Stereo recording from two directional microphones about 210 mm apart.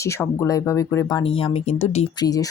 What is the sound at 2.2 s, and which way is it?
Speech, 15° left (ahead or behind).